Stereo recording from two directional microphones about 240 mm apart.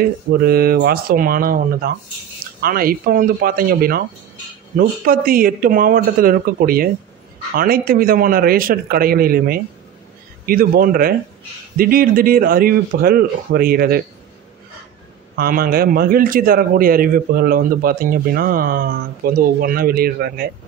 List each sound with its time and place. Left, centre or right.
0.0 s a man's voice: right
15.3 s a man's voice: right